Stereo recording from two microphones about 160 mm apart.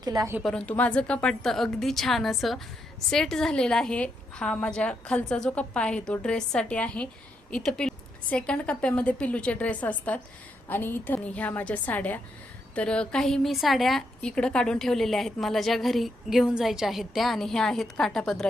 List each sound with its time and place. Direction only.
0.0 s a woman's voice: 25° right (ahead or behind)
0.4 s a woman's voice: 5° left (ahead or behind)